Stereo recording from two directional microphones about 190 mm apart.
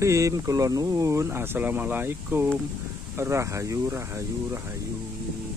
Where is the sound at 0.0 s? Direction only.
15° right (ahead or behind).